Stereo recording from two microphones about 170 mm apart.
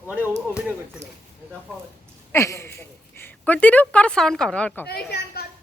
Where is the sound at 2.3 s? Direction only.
15° left (ahead or behind).